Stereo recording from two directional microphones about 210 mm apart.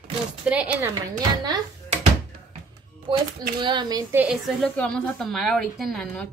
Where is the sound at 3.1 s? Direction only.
20° right (ahead or behind).